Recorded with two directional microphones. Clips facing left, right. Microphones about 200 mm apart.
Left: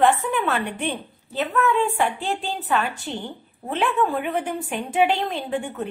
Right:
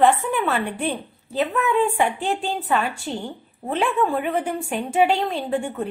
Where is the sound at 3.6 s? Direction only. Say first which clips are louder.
Right 2 dB; 20° right (ahead or behind).